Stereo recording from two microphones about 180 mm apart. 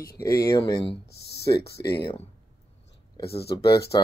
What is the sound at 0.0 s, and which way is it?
Speech, 20° left (ahead or behind).